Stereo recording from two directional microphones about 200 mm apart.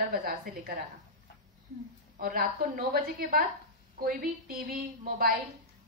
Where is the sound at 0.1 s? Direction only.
50° right (ahead or behind).